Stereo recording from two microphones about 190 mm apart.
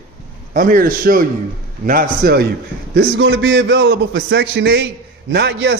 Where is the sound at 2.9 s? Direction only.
65° right (ahead or behind).